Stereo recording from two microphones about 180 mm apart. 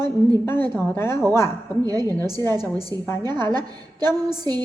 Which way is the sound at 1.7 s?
20° right (ahead or behind).